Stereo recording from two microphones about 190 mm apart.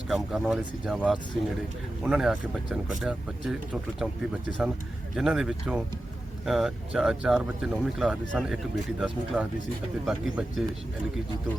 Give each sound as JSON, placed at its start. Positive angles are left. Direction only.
{"t": 0.1, "sound": "speech", "side_deg": 0}